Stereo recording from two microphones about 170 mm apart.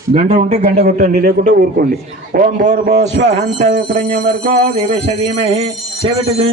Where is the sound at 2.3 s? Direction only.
50° right (ahead or behind).